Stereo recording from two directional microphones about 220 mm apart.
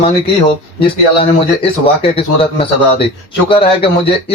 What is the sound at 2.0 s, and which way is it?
Speech, 25° left (ahead or behind).